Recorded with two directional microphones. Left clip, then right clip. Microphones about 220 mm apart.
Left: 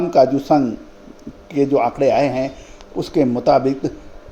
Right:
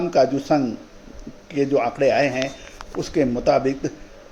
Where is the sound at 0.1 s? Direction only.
20° left (ahead or behind).